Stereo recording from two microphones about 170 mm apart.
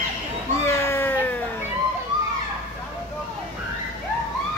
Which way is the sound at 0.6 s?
15° left (ahead or behind).